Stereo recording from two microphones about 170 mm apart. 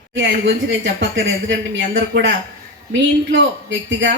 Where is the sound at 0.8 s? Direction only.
90° right.